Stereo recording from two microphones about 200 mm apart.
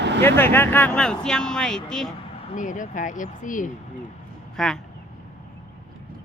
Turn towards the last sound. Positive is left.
turn(degrees=5)  # may be behind; listen again after turning